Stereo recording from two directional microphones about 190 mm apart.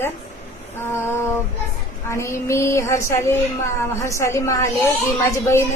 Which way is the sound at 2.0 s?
15° left (ahead or behind).